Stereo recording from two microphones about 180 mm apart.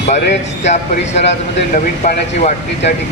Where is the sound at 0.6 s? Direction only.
40° left (ahead or behind).